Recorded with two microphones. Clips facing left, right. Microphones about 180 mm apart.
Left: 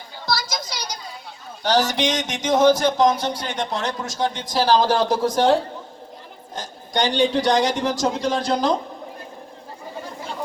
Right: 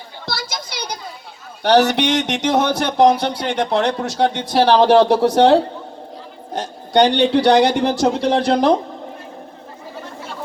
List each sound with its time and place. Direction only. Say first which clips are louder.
0.3 s children playing: left 2 dB; 60° right (ahead or behind)
1.6 s speech: right 6 dB; 65° right (ahead or behind)